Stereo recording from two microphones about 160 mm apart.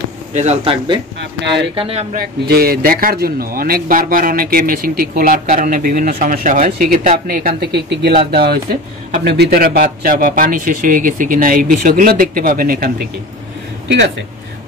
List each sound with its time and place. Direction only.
0.3 s speech: 45° right (ahead or behind)
1.8 s speech: 40° right (ahead or behind)
2.1 s a man's voice: 75° right (ahead or behind)